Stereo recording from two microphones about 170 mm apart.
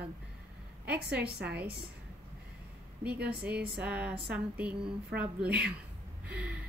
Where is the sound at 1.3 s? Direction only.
70° right (ahead or behind).